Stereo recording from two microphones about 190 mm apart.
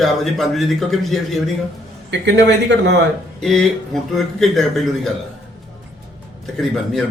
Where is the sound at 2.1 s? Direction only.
65° right (ahead or behind).